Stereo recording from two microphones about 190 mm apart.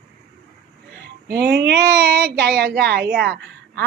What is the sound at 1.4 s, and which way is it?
A woman's voice, 60° right (ahead or behind).